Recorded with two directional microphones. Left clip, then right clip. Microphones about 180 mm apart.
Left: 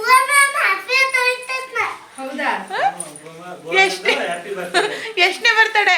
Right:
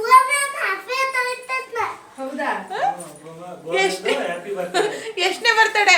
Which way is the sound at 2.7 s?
30° left (ahead or behind).